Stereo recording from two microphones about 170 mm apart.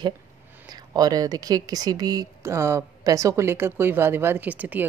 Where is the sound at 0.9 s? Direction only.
20° right (ahead or behind).